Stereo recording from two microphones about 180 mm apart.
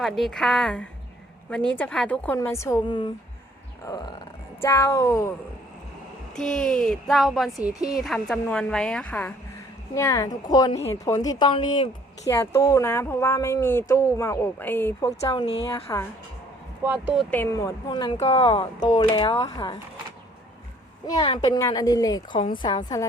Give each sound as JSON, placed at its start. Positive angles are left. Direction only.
{"t": 0.0, "sound": "a woman's voice", "side_deg": 0}
{"t": 6.3, "sound": "a woman's voice", "side_deg": 5}
{"t": 9.9, "sound": "a woman's voice", "side_deg": 15}
{"t": 15.3, "sound": "speech", "side_deg": 30}
{"t": 15.7, "sound": "a woman's voice", "side_deg": 15}
{"t": 16.8, "sound": "speech", "side_deg": -10}
{"t": 17.3, "sound": "a woman's voice", "side_deg": 15}
{"t": 18.2, "sound": "a woman's voice", "side_deg": 35}
{"t": 21.1, "sound": "a woman's voice", "side_deg": 25}